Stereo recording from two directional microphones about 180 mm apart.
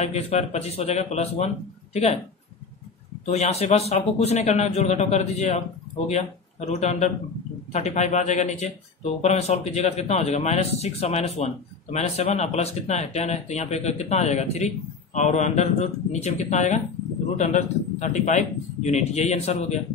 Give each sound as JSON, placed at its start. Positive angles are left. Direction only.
{"t": 0.0, "sound": "speech", "side_deg": 35}
{"t": 3.3, "sound": "speech", "side_deg": 35}